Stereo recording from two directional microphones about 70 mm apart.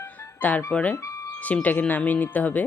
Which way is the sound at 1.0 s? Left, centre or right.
Left.